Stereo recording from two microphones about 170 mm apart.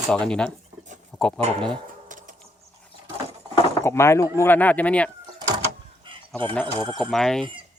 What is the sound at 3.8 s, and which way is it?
Speech, 15° left (ahead or behind).